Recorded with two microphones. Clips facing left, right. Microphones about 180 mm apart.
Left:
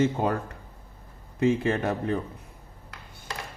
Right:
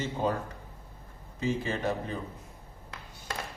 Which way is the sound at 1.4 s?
60° left (ahead or behind).